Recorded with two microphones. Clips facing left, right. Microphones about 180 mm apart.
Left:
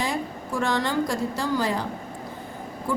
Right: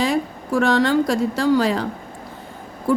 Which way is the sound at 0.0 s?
70° right (ahead or behind).